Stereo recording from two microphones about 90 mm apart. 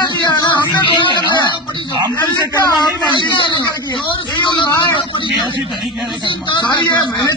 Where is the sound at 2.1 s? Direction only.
50° left (ahead or behind).